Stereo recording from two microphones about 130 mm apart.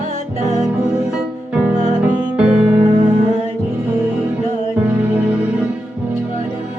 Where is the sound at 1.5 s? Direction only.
10° right (ahead or behind).